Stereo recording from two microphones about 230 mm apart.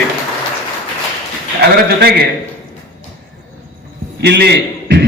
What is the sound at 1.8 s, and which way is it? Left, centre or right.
Speech, right.